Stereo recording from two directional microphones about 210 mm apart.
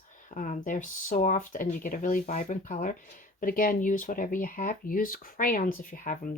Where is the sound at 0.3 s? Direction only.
35° left (ahead or behind).